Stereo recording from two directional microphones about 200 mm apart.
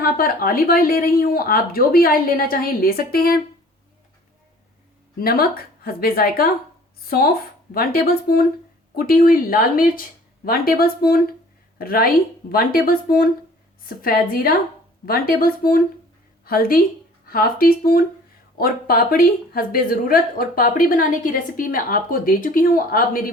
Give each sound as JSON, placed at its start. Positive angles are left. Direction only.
{"t": 0.0, "sound": "a woman's voice", "side_deg": 45}
{"t": 5.2, "sound": "a woman's voice", "side_deg": 50}